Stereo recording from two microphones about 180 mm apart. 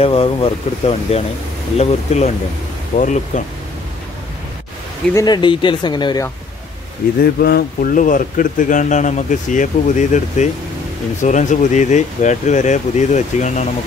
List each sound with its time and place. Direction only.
0.0 s speech: 30° left (ahead or behind)
5.1 s speech: 25° left (ahead or behind)
7.2 s speech: 60° left (ahead or behind); by 13.7 s 40° left (ahead or behind)